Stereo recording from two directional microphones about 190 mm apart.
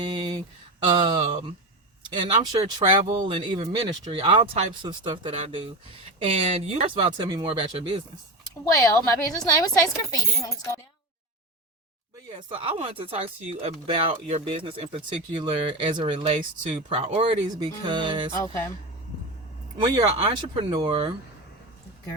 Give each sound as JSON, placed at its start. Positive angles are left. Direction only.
{"t": 0.1, "sound": "a sound", "side_deg": -20}
{"t": 0.9, "sound": "speech", "side_deg": -25}
{"t": 8.7, "sound": "a woman's voice", "side_deg": 15}
{"t": 12.5, "sound": "speech", "side_deg": -30}
{"t": 19.8, "sound": "speech", "side_deg": -25}